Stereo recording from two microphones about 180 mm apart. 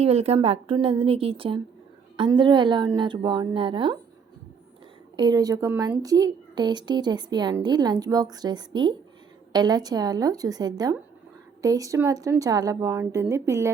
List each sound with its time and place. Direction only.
0.0 s a woman's voice: 35° right (ahead or behind)
5.1 s speech: 25° right (ahead or behind)